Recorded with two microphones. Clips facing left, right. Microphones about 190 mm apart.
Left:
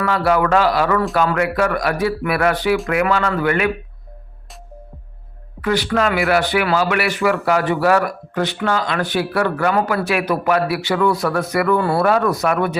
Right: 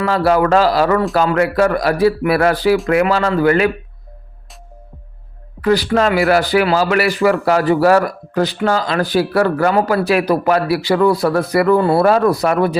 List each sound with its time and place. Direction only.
0.0 s speech: 35° right (ahead or behind)
5.6 s speech: 35° right (ahead or behind)
11.8 s speech: 20° right (ahead or behind)
12.0 s speech: 35° right (ahead or behind)